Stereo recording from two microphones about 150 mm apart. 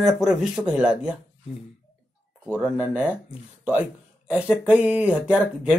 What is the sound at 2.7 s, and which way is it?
Speech, 10° right (ahead or behind).